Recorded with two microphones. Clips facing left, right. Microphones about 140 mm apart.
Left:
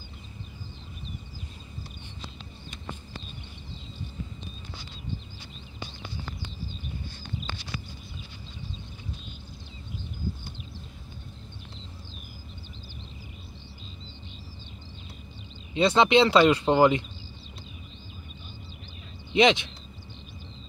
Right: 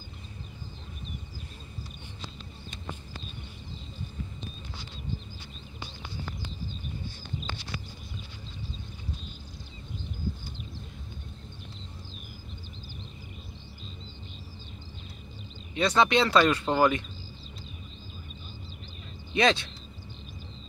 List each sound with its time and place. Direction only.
15.7 s speech: 25° left (ahead or behind)
16.3 s speech: 15° left (ahead or behind)
19.3 s speech: 20° left (ahead or behind)